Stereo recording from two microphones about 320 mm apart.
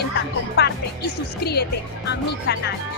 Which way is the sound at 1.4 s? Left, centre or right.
Left.